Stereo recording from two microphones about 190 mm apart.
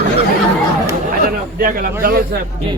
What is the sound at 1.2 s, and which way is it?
Speech, 50° right (ahead or behind).